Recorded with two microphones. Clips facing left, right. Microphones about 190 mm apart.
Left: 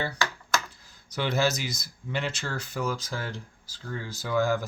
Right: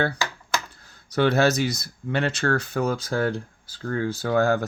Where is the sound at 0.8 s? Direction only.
65° right (ahead or behind).